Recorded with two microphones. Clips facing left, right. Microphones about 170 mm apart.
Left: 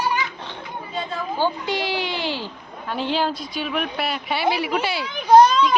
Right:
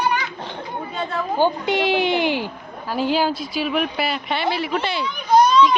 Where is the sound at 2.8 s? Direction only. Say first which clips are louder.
Right 3 dB; 5° right (ahead or behind).